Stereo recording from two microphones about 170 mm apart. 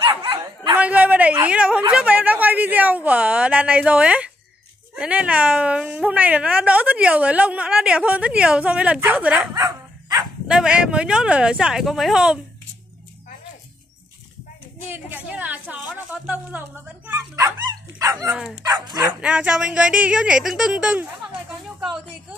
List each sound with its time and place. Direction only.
0.7 s a sound: 10° right (ahead or behind)
1.4 s speech: 5° right (ahead or behind)
9.6 s dog: 25° right (ahead or behind)
10.5 s speech: 5° right (ahead or behind)
14.9 s a woman's voice: 10° right (ahead or behind)
18.3 s speech: centre (ahead or behind)
18.6 s speech: 25° right (ahead or behind)
19.0 s speech: 5° right (ahead or behind)